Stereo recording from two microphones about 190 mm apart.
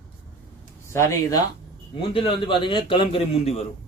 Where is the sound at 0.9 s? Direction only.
15° left (ahead or behind).